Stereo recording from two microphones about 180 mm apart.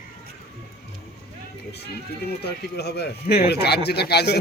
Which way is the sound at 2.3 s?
65° left (ahead or behind).